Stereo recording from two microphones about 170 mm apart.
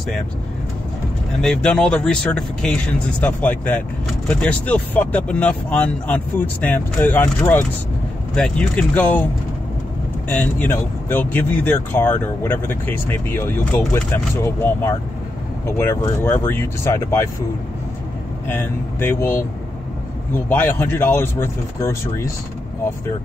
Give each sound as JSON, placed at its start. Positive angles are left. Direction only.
{"t": 1.4, "sound": "speech", "side_deg": 5}
{"t": 10.3, "sound": "speech", "side_deg": 10}
{"t": 18.5, "sound": "speech", "side_deg": 10}
{"t": 20.4, "sound": "speech", "side_deg": 10}